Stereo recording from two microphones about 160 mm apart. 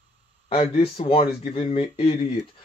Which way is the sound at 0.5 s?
40° left (ahead or behind).